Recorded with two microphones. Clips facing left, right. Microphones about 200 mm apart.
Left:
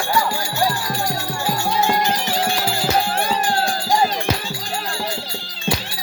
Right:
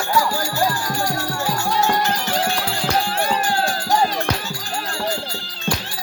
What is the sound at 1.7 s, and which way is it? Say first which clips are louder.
Music: even; 15° left (ahead or behind).